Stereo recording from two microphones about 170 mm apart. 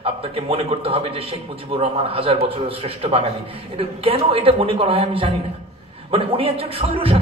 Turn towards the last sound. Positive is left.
turn(degrees=-35)  # may be behind; listen again after turning